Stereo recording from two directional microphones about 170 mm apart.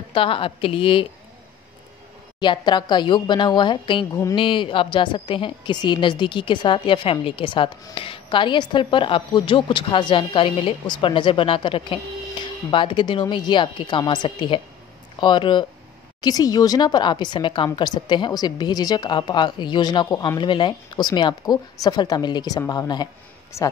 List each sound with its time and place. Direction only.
0.1 s a woman's voice: 30° left (ahead or behind)
2.4 s a woman's voice: 25° left (ahead or behind)